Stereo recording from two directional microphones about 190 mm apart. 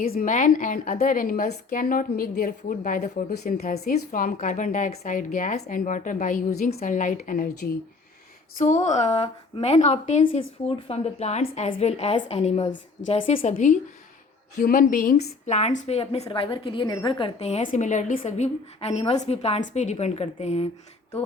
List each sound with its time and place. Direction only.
0.0 s a woman's voice: 50° left (ahead or behind)